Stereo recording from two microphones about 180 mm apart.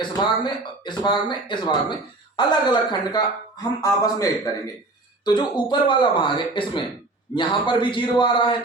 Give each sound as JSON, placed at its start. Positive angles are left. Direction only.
{"t": 0.4, "sound": "a man's voice", "side_deg": 25}